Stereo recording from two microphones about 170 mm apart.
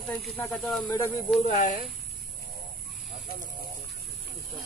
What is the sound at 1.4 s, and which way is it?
Speech, 45° left (ahead or behind).